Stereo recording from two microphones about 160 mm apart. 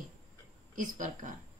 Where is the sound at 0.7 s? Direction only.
55° right (ahead or behind).